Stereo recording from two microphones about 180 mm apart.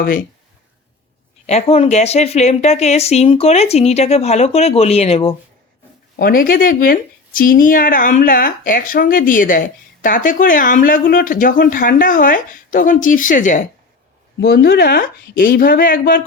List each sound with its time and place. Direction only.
1.5 s a woman's voice: 35° left (ahead or behind)
6.1 s speech: 55° left (ahead or behind)
14.4 s speech: 60° left (ahead or behind)